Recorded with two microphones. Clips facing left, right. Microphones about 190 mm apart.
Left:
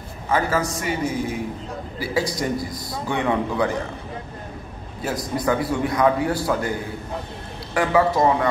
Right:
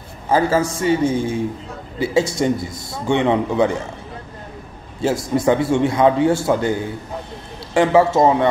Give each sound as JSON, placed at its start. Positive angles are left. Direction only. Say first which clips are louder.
{"t": 0.3, "sound": "a man's voice", "louder": "right 5 dB", "side_deg": -30}
{"t": 5.0, "sound": "a man's voice", "louder": "right 6 dB", "side_deg": -25}